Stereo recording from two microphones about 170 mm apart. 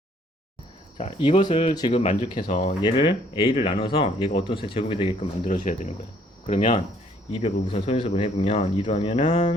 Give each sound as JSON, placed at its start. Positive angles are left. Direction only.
{"t": 1.2, "sound": "speech", "side_deg": 30}
{"t": 2.6, "sound": "speech", "side_deg": 30}
{"t": 5.5, "sound": "speech", "side_deg": 45}
{"t": 6.5, "sound": "speech", "side_deg": 35}